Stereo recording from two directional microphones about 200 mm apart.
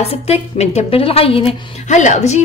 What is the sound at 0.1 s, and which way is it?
A woman's voice, 30° left (ahead or behind).